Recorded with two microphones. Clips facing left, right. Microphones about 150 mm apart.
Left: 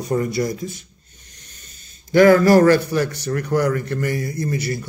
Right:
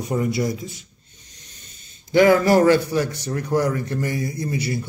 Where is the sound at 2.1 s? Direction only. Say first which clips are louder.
Left 3 dB; 15° right (ahead or behind).